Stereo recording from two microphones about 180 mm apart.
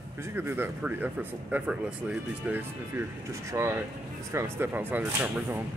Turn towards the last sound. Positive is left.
turn(degrees=-10)  # may be behind; listen again after turning